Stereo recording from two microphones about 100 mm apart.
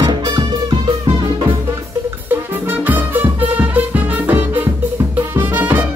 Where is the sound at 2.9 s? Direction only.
20° right (ahead or behind).